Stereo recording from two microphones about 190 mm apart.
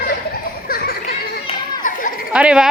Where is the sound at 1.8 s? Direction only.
45° left (ahead or behind).